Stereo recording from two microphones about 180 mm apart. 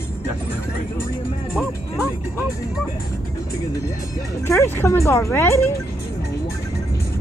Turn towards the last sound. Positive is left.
turn(degrees=15)  # may be behind; listen again after turning